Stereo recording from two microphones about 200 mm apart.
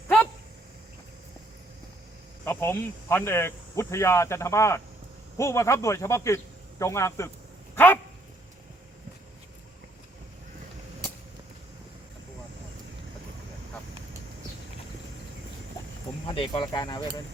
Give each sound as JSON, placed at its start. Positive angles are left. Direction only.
{"t": 2.4, "sound": "speech", "side_deg": 10}
{"t": 16.2, "sound": "speech", "side_deg": 25}